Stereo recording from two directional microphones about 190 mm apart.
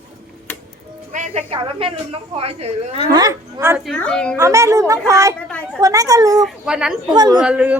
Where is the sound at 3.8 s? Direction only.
5° left (ahead or behind).